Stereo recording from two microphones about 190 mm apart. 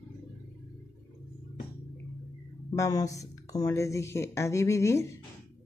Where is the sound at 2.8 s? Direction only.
15° left (ahead or behind).